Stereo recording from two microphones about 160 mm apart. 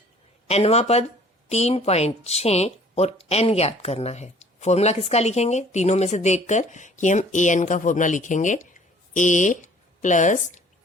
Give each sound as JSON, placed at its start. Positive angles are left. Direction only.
{"t": 0.4, "sound": "speech", "side_deg": 40}